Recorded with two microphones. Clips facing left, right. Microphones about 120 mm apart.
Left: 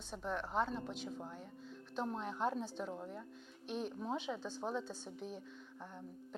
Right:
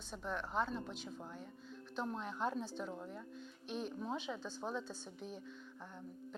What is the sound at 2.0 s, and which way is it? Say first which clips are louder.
Speech: left 2 dB; 30° left (ahead or behind).